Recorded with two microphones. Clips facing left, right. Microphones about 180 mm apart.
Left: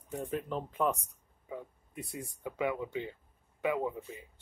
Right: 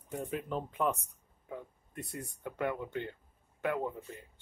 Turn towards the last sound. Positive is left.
turn(degrees=5)  # may be behind; listen again after turning